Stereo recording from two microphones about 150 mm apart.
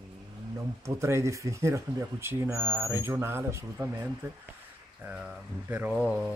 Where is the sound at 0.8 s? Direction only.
20° right (ahead or behind).